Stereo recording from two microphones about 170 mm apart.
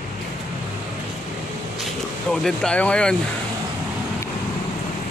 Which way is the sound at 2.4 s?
5° left (ahead or behind).